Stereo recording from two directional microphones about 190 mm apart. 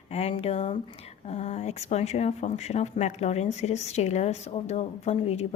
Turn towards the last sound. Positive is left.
turn(degrees=35)  # may be behind; listen again after turning